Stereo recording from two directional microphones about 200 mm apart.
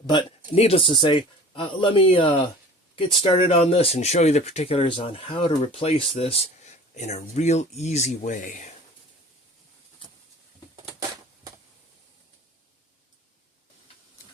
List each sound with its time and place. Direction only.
0.1 s speech: 25° left (ahead or behind); by 8.7 s 40° left (ahead or behind)